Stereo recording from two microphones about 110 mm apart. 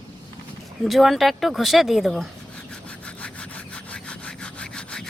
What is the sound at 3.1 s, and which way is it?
Sawing, 10° left (ahead or behind).